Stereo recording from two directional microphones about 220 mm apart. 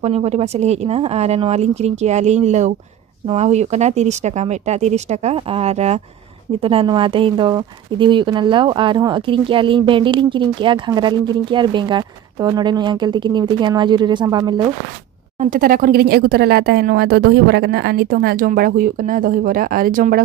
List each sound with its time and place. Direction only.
0.0 s speech: 30° right (ahead or behind)
15.3 s speech: 40° right (ahead or behind)